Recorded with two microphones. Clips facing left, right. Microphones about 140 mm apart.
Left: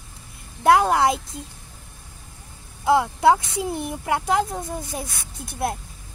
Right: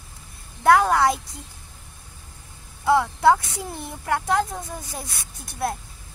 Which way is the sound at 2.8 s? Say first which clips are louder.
Left 1 dB; 20° left (ahead or behind).